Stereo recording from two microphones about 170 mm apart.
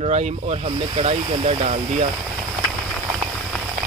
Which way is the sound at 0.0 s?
40° right (ahead or behind).